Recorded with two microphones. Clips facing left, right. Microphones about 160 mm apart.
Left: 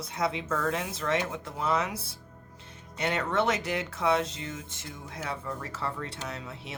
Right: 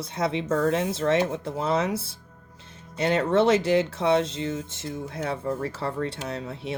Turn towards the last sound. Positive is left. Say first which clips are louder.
# right 8 dB
turn(degrees=-30)  # may be behind; listen again after turning